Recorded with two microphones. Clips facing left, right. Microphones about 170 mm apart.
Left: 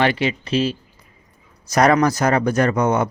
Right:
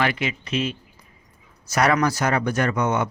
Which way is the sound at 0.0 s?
30° left (ahead or behind).